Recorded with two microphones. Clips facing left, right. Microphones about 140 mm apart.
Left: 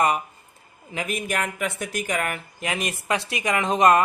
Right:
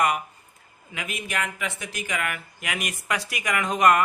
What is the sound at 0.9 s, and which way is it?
Speech, 40° left (ahead or behind).